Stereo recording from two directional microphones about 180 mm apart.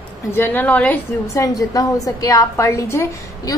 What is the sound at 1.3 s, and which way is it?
A woman's voice, 20° left (ahead or behind).